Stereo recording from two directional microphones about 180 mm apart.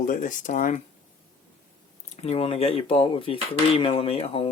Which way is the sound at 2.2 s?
35° left (ahead or behind).